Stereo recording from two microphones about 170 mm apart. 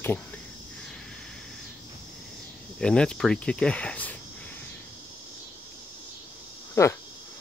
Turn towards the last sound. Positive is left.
turn(degrees=15)  # may be behind; listen again after turning